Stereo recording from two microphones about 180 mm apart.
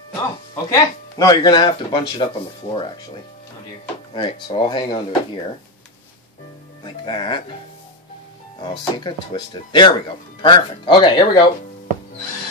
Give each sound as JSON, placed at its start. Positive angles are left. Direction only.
{"t": 0.7, "sound": "speech", "side_deg": 20}
{"t": 4.1, "sound": "speech", "side_deg": 25}
{"t": 6.8, "sound": "speech", "side_deg": 25}
{"t": 8.5, "sound": "speech", "side_deg": 25}